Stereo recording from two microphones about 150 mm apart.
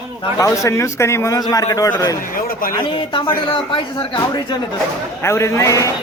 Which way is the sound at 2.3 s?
70° left (ahead or behind).